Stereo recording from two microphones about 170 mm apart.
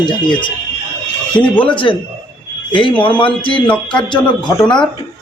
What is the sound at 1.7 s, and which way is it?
Speech, 30° left (ahead or behind).